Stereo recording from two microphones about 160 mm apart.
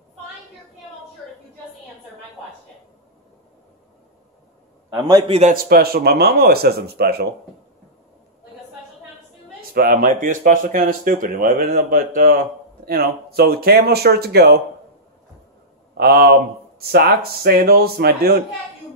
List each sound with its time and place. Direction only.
4.9 s a man's voice: 25° right (ahead or behind)
5.5 s speech: 65° right (ahead or behind)
9.8 s speech: 60° right (ahead or behind); by 14.6 s 75° right (ahead or behind)
16.0 s speech: 80° right